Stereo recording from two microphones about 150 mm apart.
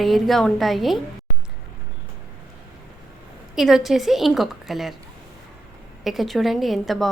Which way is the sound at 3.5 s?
Centre (ahead or behind).